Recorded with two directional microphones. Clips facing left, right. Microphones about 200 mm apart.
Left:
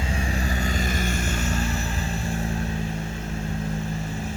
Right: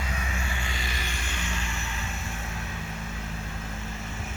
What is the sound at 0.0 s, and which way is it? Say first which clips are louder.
Vehicle: left 7 dB; 30° left (ahead or behind).